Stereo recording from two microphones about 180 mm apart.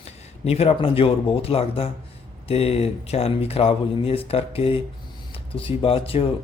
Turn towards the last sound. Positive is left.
turn(degrees=30)  # may be behind; listen again after turning